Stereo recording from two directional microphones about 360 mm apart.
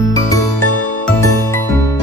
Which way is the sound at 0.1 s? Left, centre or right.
Centre.